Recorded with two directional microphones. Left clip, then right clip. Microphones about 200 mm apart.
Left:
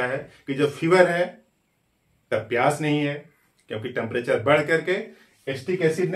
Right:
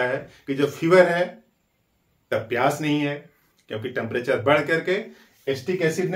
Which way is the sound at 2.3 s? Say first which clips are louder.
Even; 5° left (ahead or behind).